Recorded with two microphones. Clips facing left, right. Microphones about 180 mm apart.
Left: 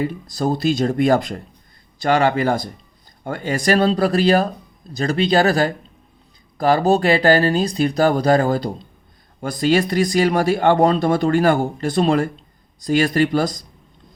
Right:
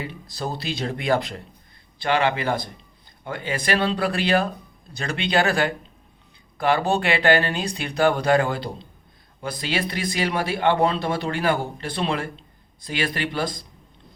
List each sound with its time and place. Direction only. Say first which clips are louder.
0.0 s speech: left 9 dB; 45° left (ahead or behind)